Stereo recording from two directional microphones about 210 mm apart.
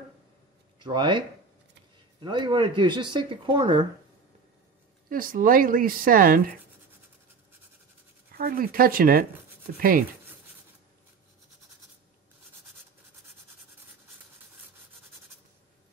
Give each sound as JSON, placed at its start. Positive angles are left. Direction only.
{"t": 0.7, "sound": "speech", "side_deg": -20}
{"t": 5.1, "sound": "speech", "side_deg": -40}
{"t": 8.3, "sound": "speech", "side_deg": -45}